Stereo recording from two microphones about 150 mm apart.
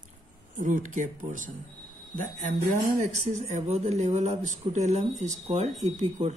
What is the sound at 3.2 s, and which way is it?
Speech, 50° right (ahead or behind).